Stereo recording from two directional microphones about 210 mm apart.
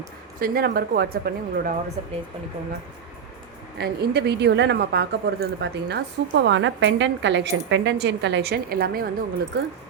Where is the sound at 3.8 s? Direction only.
50° right (ahead or behind).